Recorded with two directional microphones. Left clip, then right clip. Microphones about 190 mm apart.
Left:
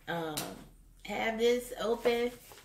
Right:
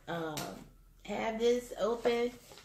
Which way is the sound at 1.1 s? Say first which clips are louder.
Left 2 dB; 10° left (ahead or behind).